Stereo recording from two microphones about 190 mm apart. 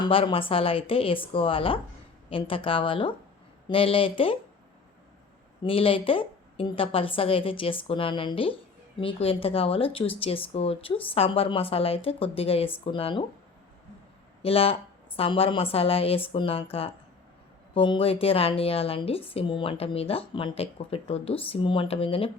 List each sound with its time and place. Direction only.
0.0 s speech: 25° left (ahead or behind)
5.6 s speech: 30° left (ahead or behind)
14.4 s a woman's voice: 30° left (ahead or behind)
17.7 s speech: 30° left (ahead or behind)